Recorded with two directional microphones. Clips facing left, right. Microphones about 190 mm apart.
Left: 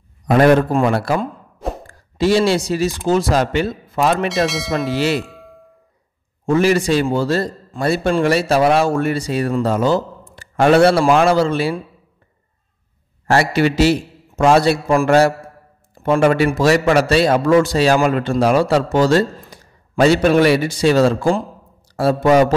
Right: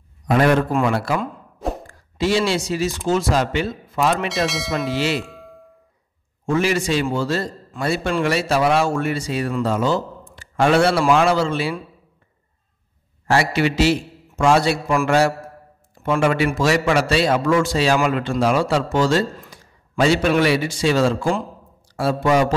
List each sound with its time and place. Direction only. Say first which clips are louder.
0.3 s a man's voice: left 4 dB; 40° left (ahead or behind)
4.3 s speech: left 4 dB; centre (ahead or behind)
4.9 s speech: left 4 dB; 45° left (ahead or behind)
5.2 s a sound: left 1 dB; centre (ahead or behind)
6.5 s a man's voice: left 5 dB; 40° left (ahead or behind)
13.3 s a man's voice: left 3 dB; 40° left (ahead or behind)